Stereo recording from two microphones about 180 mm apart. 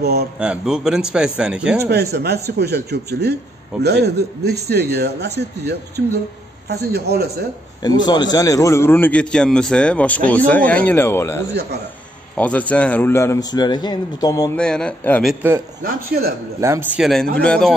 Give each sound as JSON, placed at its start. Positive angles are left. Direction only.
{"t": 0.0, "sound": "a man's voice", "side_deg": -60}
{"t": 0.4, "sound": "a man's voice", "side_deg": -5}
{"t": 1.9, "sound": "a man's voice", "side_deg": -65}
{"t": 7.8, "sound": "a man's voice", "side_deg": 20}
{"t": 14.6, "sound": "a man's voice", "side_deg": 5}
{"t": 15.8, "sound": "a man's voice", "side_deg": -60}
{"t": 16.6, "sound": "a man's voice", "side_deg": -15}
{"t": 17.0, "sound": "a man's voice", "side_deg": 0}